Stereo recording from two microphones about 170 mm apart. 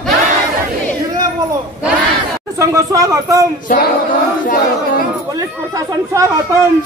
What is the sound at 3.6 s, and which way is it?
Female singing, 55° left (ahead or behind).